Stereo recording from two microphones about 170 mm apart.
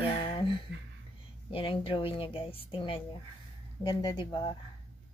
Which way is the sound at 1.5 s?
30° left (ahead or behind).